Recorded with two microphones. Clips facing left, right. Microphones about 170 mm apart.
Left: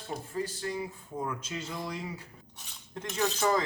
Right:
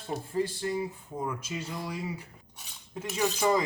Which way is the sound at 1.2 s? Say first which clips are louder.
Right 2 dB; 10° right (ahead or behind).